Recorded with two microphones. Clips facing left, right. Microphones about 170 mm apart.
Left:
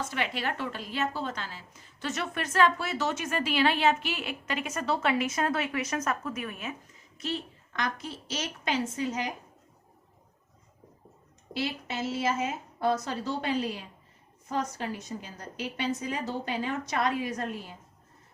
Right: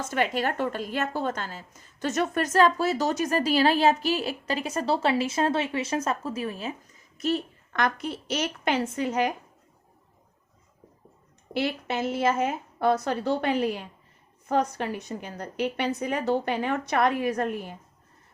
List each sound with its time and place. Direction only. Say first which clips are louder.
0.0 s a woman's voice: right 6 dB; 45° right (ahead or behind)
7.2 s a woman's voice: right 7 dB; 45° right (ahead or behind)
7.7 s a woman's voice: right 6 dB; 60° right (ahead or behind)
11.5 s a woman's voice: right 5 dB; 60° right (ahead or behind)